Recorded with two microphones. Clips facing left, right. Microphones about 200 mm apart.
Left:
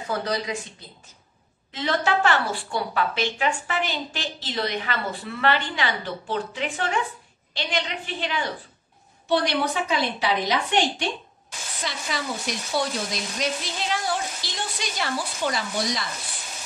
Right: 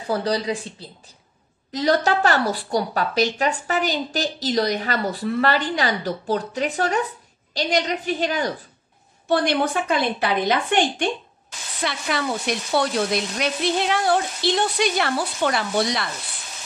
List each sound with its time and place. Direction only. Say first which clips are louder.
0.0 s a woman's voice: right 4 dB; 30° right (ahead or behind); by 16.1 s 65° right (ahead or behind)